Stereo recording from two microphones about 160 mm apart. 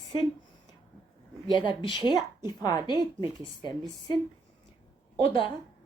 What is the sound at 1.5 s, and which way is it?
Speech, 30° left (ahead or behind).